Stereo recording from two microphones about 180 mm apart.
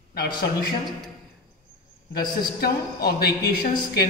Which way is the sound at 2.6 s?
60° left (ahead or behind).